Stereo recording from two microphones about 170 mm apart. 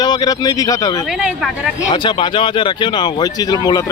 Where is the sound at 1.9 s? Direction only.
30° left (ahead or behind).